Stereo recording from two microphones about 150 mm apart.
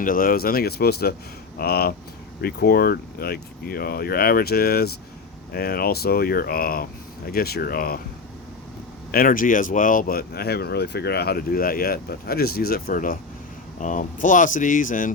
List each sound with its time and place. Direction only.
0.0 s speech: 70° left (ahead or behind)
7.3 s speech: 90° left
9.1 s speech: 65° left (ahead or behind)